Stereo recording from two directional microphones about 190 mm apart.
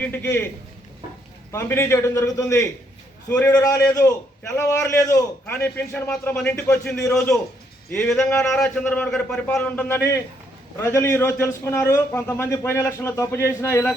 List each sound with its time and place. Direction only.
0.0 s a man's voice: 10° left (ahead or behind)
1.5 s a man's voice: 15° left (ahead or behind)